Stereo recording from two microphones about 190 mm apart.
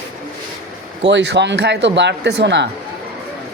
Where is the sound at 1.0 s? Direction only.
65° right (ahead or behind).